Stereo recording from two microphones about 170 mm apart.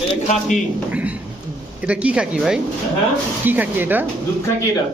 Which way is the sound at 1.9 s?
5° right (ahead or behind).